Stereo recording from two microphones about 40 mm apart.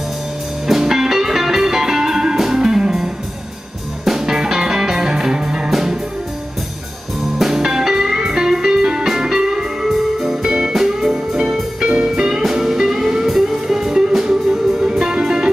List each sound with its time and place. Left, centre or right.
0.7 s music: centre
7.3 s music: centre